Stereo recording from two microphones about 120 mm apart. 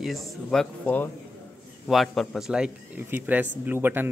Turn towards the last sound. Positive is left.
turn(degrees=-15)  # may be behind; listen again after turning